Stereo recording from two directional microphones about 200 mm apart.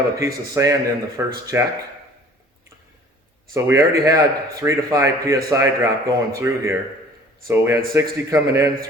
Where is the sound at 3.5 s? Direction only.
15° right (ahead or behind).